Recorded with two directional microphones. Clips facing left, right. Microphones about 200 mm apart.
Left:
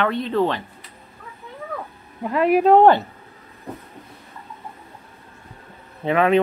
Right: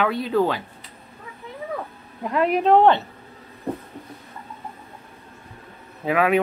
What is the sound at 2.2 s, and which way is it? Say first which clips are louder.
Speech: left 3 dB; 5° left (ahead or behind).